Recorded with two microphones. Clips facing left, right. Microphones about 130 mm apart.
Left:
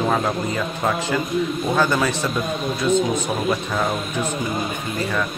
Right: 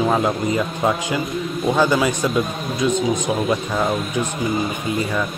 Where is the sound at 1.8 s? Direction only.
10° right (ahead or behind).